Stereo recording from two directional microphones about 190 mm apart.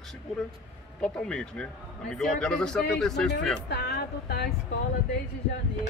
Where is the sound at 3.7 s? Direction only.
60° left (ahead or behind).